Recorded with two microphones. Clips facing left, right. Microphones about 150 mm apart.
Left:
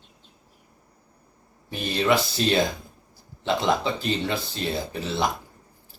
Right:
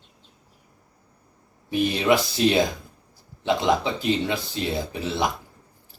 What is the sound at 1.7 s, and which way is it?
Speech, 15° right (ahead or behind).